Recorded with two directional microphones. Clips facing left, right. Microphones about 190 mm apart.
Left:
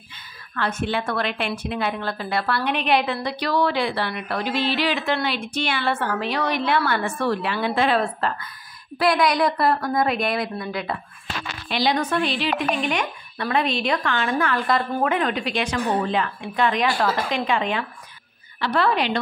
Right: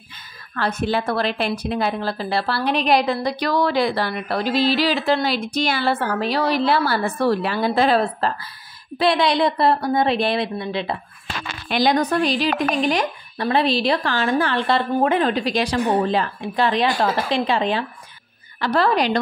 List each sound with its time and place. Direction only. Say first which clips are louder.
0.6 s a woman's voice: right 3 dB; 35° right (ahead or behind)
11.7 s a woman's voice: right 4 dB; 45° right (ahead or behind)